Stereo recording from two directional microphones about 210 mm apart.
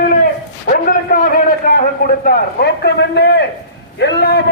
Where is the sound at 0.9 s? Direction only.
40° left (ahead or behind).